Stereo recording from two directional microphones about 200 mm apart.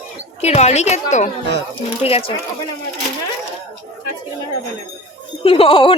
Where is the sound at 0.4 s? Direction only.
35° left (ahead or behind).